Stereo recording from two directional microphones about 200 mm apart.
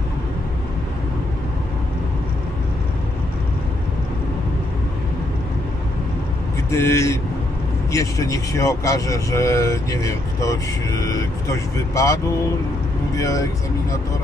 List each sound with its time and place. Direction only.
6.7 s speech: 15° left (ahead or behind)